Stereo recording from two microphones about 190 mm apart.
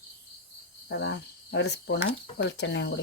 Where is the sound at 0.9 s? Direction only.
65° left (ahead or behind).